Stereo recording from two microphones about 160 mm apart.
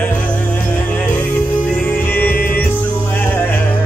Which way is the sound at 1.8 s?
10° left (ahead or behind).